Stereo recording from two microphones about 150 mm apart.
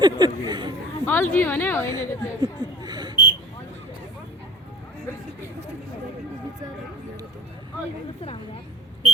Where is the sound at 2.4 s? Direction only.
25° right (ahead or behind).